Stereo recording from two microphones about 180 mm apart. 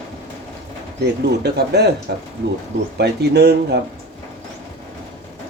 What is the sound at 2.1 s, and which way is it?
Speech, 60° right (ahead or behind).